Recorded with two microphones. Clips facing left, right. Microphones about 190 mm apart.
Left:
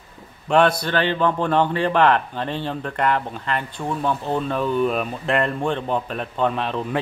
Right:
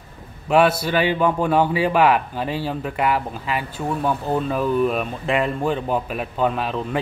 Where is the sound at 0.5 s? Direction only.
5° right (ahead or behind).